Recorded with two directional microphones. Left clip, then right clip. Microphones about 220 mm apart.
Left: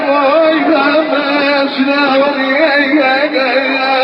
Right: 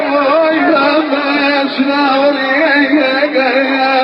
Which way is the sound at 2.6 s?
50° right (ahead or behind).